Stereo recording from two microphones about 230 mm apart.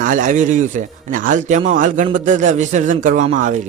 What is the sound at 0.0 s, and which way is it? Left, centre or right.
A man's voice, right.